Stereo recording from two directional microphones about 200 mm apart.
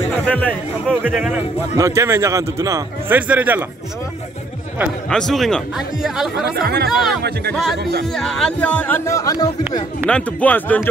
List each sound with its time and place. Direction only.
0.3 s speech: 10° left (ahead or behind)
1.0 s speech: 5° right (ahead or behind)
1.8 s a man's voice: 15° right (ahead or behind)
5.1 s speech: centre (ahead or behind)
6.5 s speech: 50° right (ahead or behind)
6.9 s speech: centre (ahead or behind); by 9.5 s 15° left (ahead or behind)
10.0 s speech: 5° left (ahead or behind)